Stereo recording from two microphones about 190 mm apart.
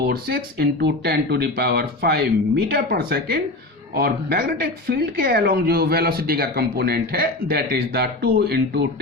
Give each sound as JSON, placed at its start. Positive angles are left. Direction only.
{"t": 0.1, "sound": "speech", "side_deg": -55}